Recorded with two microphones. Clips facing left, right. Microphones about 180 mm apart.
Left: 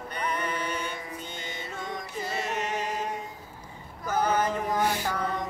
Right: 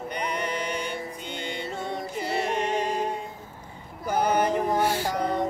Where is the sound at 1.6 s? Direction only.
25° right (ahead or behind).